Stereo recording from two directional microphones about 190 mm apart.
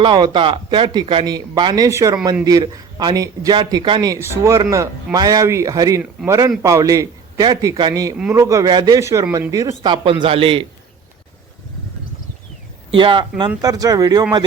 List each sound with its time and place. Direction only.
0.0 s a man's voice: 25° right (ahead or behind)
12.9 s a man's voice: 25° right (ahead or behind)